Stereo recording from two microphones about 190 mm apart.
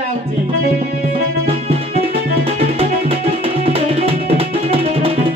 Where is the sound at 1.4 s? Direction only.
30° right (ahead or behind).